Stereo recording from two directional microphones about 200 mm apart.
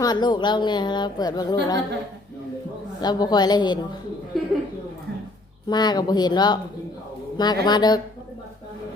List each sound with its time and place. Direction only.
0.0 s a woman's voice: 20° left (ahead or behind)
3.0 s a woman's voice: 20° left (ahead or behind)
4.3 s a sound: centre (ahead or behind)
5.6 s a woman's voice: 20° left (ahead or behind)